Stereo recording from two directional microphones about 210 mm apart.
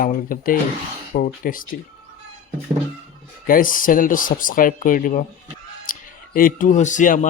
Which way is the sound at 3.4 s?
40° left (ahead or behind).